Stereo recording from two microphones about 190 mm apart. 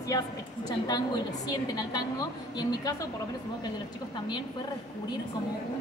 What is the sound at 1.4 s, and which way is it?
A woman's voice, 20° left (ahead or behind).